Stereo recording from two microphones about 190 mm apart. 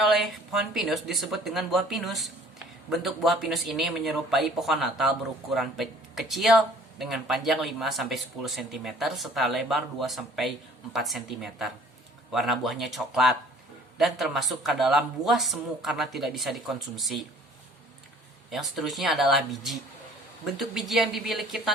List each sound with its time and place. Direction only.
0.0 s speech: centre (ahead or behind)
18.5 s speech: centre (ahead or behind)